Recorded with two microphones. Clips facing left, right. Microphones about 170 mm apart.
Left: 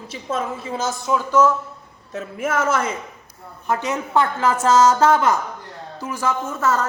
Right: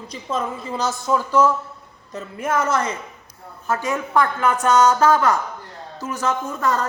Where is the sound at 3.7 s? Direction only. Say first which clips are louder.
Even; 20° left (ahead or behind).